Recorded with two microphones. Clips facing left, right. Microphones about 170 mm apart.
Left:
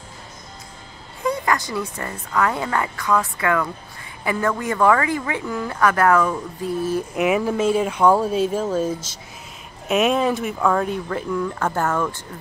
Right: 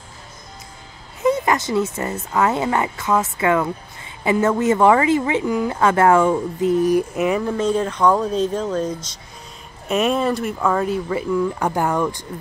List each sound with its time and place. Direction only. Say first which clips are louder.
1.2 s a sound: right 4 dB; 20° right (ahead or behind)
2.3 s a woman's voice: right 2 dB; 25° right (ahead or behind)
7.2 s speech: even; 5° left (ahead or behind); by 12.3 s 15° right (ahead or behind)